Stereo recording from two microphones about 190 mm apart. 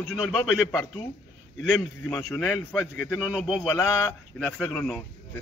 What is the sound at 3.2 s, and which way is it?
Speech, 5° right (ahead or behind).